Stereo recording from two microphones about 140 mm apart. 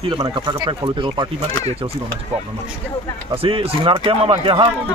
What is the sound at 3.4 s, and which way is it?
Speech, 40° right (ahead or behind).